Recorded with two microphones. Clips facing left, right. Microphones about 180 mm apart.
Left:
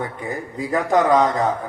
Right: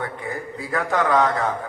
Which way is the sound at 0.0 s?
20° left (ahead or behind).